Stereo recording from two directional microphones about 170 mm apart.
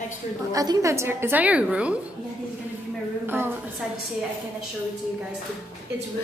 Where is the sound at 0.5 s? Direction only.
20° right (ahead or behind).